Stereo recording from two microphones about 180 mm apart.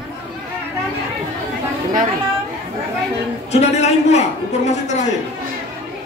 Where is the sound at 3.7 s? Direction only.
35° left (ahead or behind).